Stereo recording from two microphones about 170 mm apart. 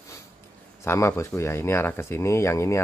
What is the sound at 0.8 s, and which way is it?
Speech, 15° left (ahead or behind).